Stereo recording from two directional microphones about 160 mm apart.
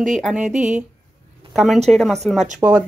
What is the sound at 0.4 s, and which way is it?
Speech, 50° right (ahead or behind).